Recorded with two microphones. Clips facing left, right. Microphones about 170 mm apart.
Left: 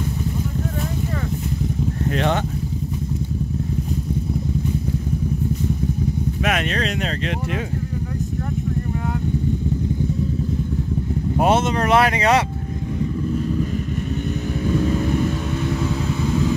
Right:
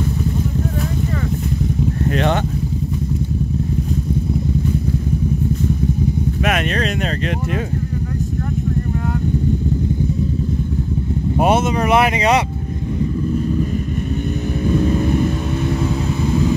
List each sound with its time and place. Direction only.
2.0 s speech: 65° right (ahead or behind)
6.4 s speech: 55° right (ahead or behind)
11.3 s speech: 15° right (ahead or behind)
14.8 s vehicle: 15° right (ahead or behind)
15.6 s vehicle: 30° right (ahead or behind)